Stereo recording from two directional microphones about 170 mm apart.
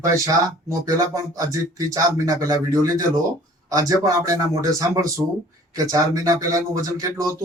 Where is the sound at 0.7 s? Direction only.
20° right (ahead or behind).